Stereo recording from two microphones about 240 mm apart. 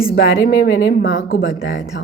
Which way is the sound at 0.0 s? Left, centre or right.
Left.